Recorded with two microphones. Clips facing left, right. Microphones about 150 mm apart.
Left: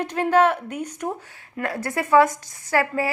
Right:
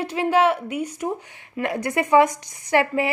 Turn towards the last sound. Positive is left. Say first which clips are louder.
# right 2 dB
turn(degrees=-20)  # may be behind; listen again after turning